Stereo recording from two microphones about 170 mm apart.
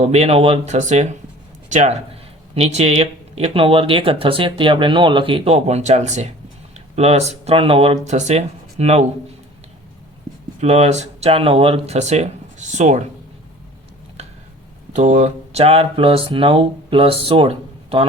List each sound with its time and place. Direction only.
0.0 s speech: 40° right (ahead or behind)
10.6 s speech: 40° right (ahead or behind)
14.9 s speech: 40° right (ahead or behind)